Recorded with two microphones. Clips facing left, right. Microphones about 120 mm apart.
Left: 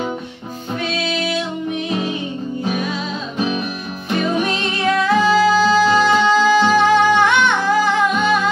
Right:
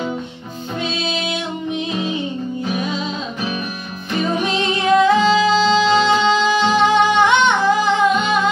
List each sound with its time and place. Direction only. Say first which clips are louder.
4.8 s music: right 2 dB; 20° right (ahead or behind)